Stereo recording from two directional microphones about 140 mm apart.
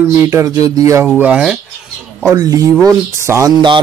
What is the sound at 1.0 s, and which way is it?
Speech, 10° right (ahead or behind).